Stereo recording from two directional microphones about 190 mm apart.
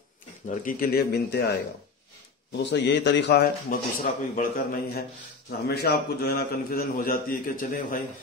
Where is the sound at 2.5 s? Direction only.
65° left (ahead or behind).